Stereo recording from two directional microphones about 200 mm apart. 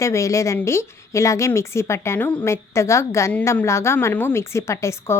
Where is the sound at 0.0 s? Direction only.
15° left (ahead or behind).